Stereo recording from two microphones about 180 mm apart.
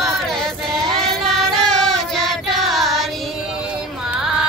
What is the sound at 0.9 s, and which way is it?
Child singing, centre (ahead or behind).